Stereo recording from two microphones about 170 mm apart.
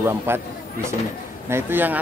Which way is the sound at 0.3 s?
10° right (ahead or behind).